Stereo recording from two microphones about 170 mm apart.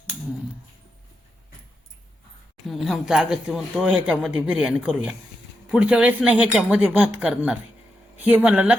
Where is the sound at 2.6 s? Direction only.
Centre (ahead or behind).